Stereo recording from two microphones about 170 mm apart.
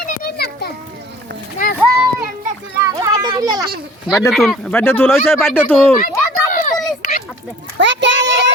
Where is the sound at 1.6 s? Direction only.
55° left (ahead or behind).